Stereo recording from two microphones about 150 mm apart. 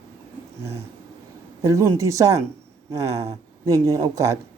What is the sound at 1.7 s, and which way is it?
A man's voice, 20° right (ahead or behind).